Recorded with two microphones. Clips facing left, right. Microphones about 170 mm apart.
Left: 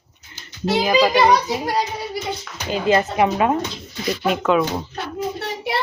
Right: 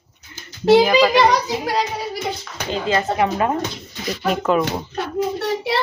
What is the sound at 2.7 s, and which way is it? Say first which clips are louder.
Speech: left 2 dB; 15° left (ahead or behind).